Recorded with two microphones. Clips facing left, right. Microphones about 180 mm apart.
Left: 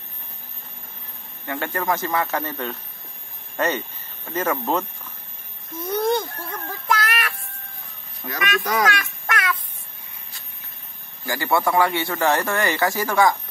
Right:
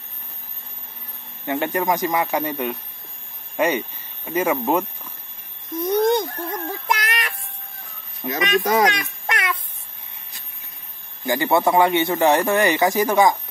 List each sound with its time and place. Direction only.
1.4 s speech: 20° right (ahead or behind)
5.8 s a sound: 10° right (ahead or behind)
6.9 s child singing: 15° right (ahead or behind)
8.2 s speech: 20° right (ahead or behind)
11.2 s speech: 20° right (ahead or behind)